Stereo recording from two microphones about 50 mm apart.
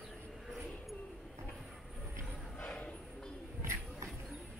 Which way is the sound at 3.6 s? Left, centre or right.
Right.